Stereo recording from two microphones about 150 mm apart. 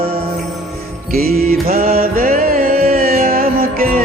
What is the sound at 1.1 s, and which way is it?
Music, 85° right.